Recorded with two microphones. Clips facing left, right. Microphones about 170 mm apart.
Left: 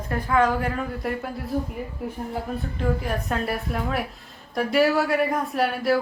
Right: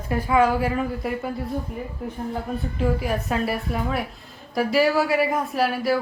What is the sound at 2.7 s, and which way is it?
Speech, 5° right (ahead or behind).